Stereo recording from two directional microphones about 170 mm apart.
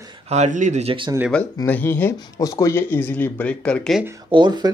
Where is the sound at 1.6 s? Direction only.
15° left (ahead or behind).